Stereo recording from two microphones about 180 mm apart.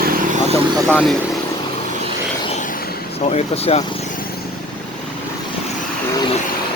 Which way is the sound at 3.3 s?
35° left (ahead or behind).